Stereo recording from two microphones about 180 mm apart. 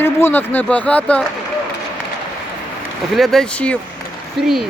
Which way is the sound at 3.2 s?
5° left (ahead or behind).